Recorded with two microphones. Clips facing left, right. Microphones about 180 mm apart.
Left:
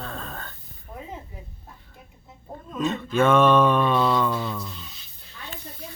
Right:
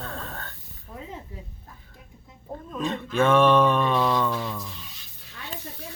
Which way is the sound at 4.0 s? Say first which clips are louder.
Left 2 dB; 20° right (ahead or behind).